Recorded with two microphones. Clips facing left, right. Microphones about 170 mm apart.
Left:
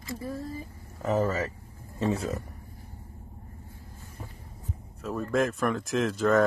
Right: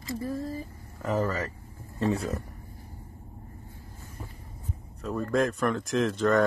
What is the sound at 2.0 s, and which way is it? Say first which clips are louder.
Speech: right 1 dB; centre (ahead or behind).